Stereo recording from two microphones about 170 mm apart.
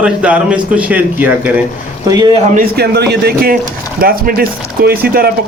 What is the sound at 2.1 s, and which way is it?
Speech, 20° right (ahead or behind).